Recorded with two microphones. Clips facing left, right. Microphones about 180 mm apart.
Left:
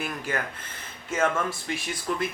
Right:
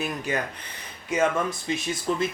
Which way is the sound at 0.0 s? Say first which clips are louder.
Right 2 dB; 20° right (ahead or behind).